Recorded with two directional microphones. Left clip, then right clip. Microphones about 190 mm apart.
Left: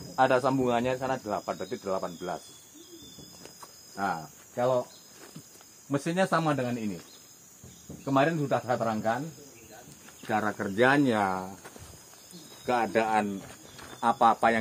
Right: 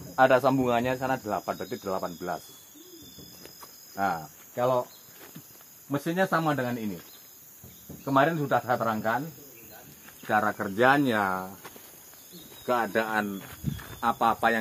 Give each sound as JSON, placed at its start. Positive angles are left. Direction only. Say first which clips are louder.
{"t": 0.1, "sound": "speech", "louder": "right 3 dB", "side_deg": -45}
{"t": 3.9, "sound": "speech", "louder": "right 3 dB", "side_deg": -55}
{"t": 4.6, "sound": "speech", "louder": "right 1 dB", "side_deg": -10}
{"t": 5.9, "sound": "speech", "louder": "right 1 dB", "side_deg": 20}
{"t": 6.5, "sound": "speech", "louder": "right 1 dB", "side_deg": 5}
{"t": 10.2, "sound": "speech", "louder": "right 3 dB", "side_deg": 15}
{"t": 12.6, "sound": "speech", "louder": "even", "side_deg": 25}
{"t": 13.7, "sound": "a sound", "louder": "right 1 dB", "side_deg": 0}
{"t": 14.0, "sound": "speech", "louder": "left 2 dB", "side_deg": 15}